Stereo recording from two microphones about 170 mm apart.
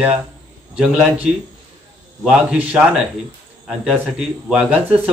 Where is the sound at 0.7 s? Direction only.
5° right (ahead or behind).